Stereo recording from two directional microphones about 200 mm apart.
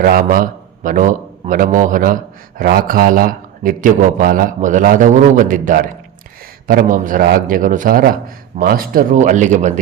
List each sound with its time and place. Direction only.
0.0 s a man's voice: 45° right (ahead or behind)